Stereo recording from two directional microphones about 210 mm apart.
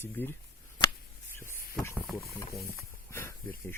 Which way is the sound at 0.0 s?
10° left (ahead or behind).